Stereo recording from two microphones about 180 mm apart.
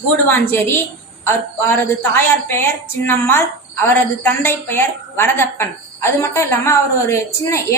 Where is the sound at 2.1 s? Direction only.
15° left (ahead or behind).